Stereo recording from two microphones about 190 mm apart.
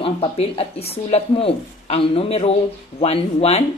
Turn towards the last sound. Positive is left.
turn(degrees=35)  # may be behind; listen again after turning